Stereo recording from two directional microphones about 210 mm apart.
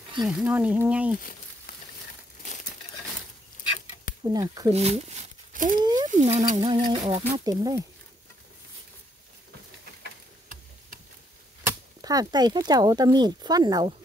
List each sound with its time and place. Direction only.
0.2 s speech: 5° right (ahead or behind)
4.2 s speech: 20° right (ahead or behind)
4.7 s a sound: 30° right (ahead or behind)
5.8 s a sound: 20° right (ahead or behind)
6.0 s speech: 35° right (ahead or behind); by 7.8 s 20° right (ahead or behind)
12.0 s speech: 20° right (ahead or behind)